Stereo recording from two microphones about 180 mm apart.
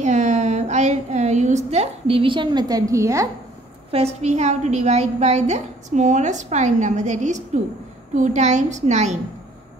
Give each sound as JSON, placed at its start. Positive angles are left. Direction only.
{"t": 0.0, "sound": "a sound", "side_deg": -40}
{"t": 1.7, "sound": "a woman's voice", "side_deg": -35}
{"t": 3.9, "sound": "a woman's voice", "side_deg": -35}